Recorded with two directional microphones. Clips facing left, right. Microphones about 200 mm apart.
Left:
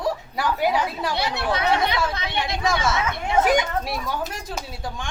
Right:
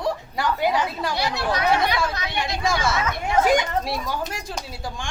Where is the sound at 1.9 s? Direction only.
Centre (ahead or behind).